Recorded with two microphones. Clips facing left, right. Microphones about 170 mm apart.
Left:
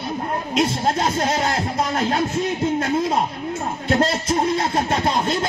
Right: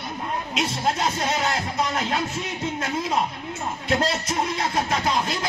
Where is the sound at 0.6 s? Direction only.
40° left (ahead or behind).